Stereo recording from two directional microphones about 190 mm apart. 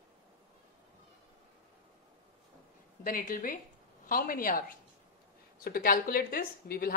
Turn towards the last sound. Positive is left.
turn(degrees=50)  # may be behind; listen again after turning